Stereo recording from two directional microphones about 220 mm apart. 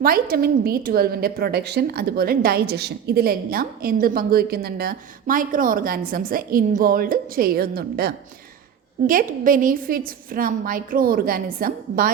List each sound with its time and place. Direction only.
0.0 s a woman's voice: 40° right (ahead or behind)